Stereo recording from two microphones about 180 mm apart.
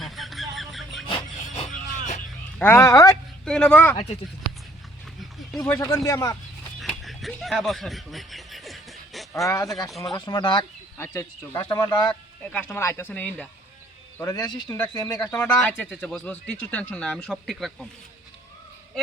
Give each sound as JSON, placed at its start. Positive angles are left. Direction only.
{"t": 0.0, "sound": "music", "side_deg": 0}
{"t": 1.0, "sound": "vehicle", "side_deg": 30}
{"t": 2.6, "sound": "speech", "side_deg": 10}
{"t": 3.4, "sound": "speech", "side_deg": 5}
{"t": 3.9, "sound": "speech", "side_deg": 35}
{"t": 5.2, "sound": "a sound", "side_deg": 0}
{"t": 5.5, "sound": "speech", "side_deg": 15}
{"t": 6.7, "sound": "snicker", "side_deg": 0}
{"t": 9.3, "sound": "speech", "side_deg": 15}
{"t": 12.5, "sound": "speech", "side_deg": 10}
{"t": 14.2, "sound": "speech", "side_deg": 20}
{"t": 15.4, "sound": "speech", "side_deg": 5}